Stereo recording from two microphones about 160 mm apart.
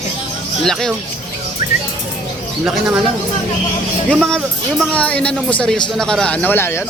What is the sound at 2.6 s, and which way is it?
Speech, 10° right (ahead or behind).